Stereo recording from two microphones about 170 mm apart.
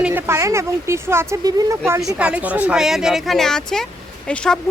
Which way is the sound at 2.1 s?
10° right (ahead or behind).